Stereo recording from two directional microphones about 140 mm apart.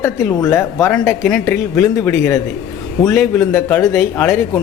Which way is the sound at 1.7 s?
20° left (ahead or behind).